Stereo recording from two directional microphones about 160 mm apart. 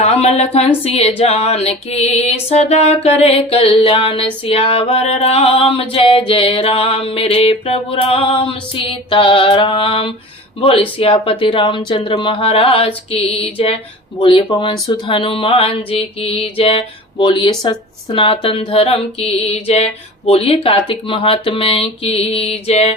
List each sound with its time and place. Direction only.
0.0 s speech: 40° left (ahead or behind)